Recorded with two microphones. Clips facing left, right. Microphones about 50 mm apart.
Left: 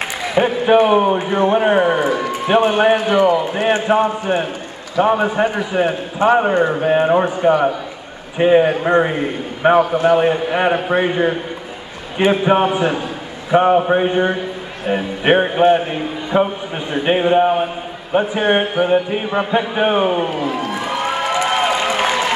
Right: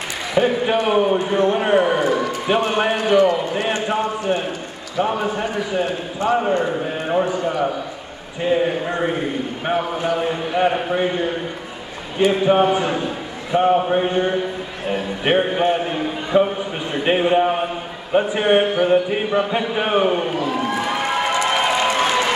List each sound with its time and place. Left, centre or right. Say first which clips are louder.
0.3 s a man's voice: left 4 dB; left
7.4 s a man's voice: left 7 dB; left
9.6 s a man's voice: left 11 dB; left
12.5 s a man's voice: left 1 dB; left
13.5 s a man's voice: left 4 dB; left
16.3 s speech: even; centre
18.8 s a man's voice: left 1 dB; left
20.5 s crowd: right 1 dB; centre
20.8 s a sound: left 1 dB; centre